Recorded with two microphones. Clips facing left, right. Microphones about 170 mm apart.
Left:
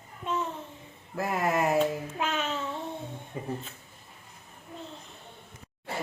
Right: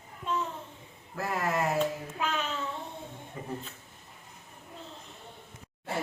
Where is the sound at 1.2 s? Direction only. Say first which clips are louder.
Left 3 dB; 15° left (ahead or behind).